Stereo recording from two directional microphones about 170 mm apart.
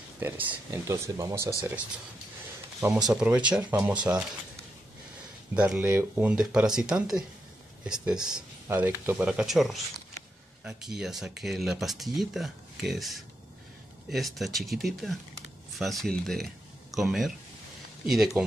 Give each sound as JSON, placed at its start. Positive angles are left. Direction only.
{"t": 0.2, "sound": "speech", "side_deg": -10}
{"t": 3.1, "sound": "speech", "side_deg": -5}
{"t": 5.6, "sound": "speech", "side_deg": -10}